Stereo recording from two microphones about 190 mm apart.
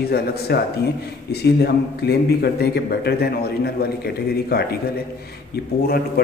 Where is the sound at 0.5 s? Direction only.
60° left (ahead or behind).